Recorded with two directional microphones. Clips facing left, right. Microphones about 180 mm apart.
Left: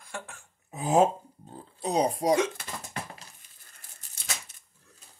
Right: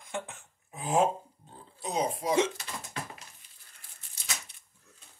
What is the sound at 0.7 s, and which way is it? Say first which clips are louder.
Speech: left 4 dB; 40° left (ahead or behind).